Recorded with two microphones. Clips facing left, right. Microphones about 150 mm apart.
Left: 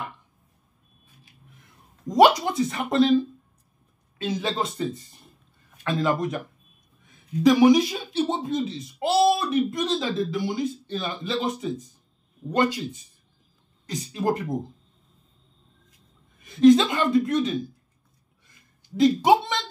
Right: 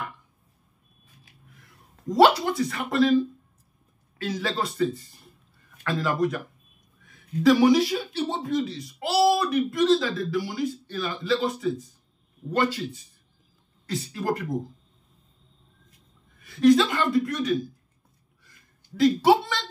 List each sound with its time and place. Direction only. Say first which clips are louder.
2.0 s speech: left 1 dB; 15° left (ahead or behind)
4.2 s speech: left 1 dB; 20° left (ahead or behind)
16.3 s speech: left 3 dB; 20° left (ahead or behind)
18.9 s speech: left 1 dB; 20° left (ahead or behind)